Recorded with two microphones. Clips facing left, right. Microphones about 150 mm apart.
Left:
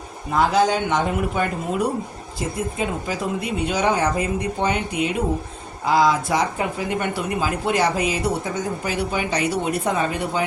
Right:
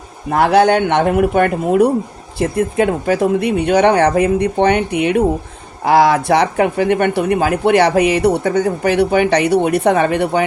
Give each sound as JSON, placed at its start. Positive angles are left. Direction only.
{"t": 0.3, "sound": "speech", "side_deg": -65}